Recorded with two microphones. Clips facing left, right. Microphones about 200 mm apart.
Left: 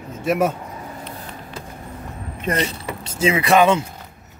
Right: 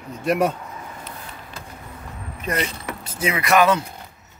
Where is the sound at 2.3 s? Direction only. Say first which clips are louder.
Left 3 dB; 30° left (ahead or behind).